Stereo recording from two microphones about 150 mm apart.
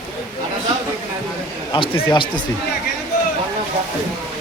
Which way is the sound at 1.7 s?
35° left (ahead or behind).